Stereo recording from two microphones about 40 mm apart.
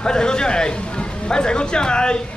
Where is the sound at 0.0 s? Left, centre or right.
Centre.